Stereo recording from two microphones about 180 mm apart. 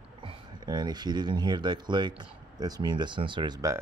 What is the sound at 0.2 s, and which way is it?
Speech, 25° right (ahead or behind).